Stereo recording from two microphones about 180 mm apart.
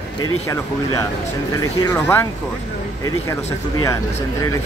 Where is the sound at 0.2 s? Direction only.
20° left (ahead or behind).